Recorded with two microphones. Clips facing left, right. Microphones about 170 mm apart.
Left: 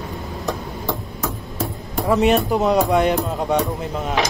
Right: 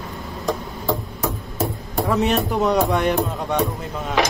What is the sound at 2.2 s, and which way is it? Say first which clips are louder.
Speech: left 4 dB; 5° left (ahead or behind).